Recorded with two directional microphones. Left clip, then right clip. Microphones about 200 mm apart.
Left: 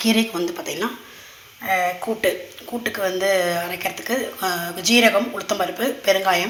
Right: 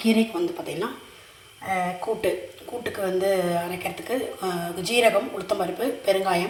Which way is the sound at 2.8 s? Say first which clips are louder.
Left 3 dB; 5° left (ahead or behind).